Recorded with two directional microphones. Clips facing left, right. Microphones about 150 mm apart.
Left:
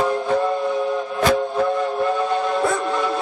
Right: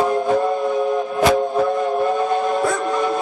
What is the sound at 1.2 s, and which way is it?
Dog, 10° right (ahead or behind).